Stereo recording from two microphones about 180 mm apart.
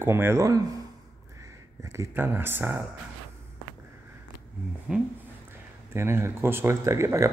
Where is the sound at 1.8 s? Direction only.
15° right (ahead or behind).